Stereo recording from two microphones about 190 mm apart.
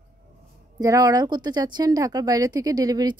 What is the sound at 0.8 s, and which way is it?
Speech, 20° right (ahead or behind).